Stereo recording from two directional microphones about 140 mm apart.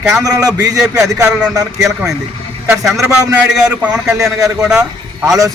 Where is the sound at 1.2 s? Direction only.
5° right (ahead or behind).